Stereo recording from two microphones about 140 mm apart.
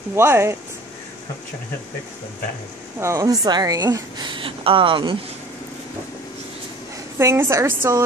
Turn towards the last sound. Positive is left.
turn(degrees=-20)  # may be behind; listen again after turning